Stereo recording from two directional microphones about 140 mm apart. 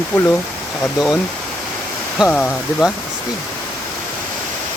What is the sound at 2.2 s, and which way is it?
Speech, 10° left (ahead or behind).